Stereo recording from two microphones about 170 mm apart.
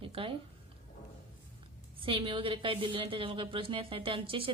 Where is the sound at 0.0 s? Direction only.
35° right (ahead or behind).